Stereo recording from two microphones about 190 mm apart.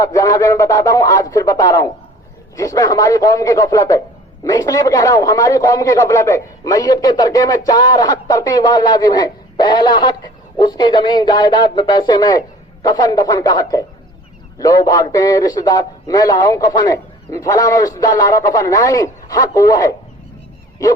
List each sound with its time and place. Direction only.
0.0 s a man's voice: 15° left (ahead or behind)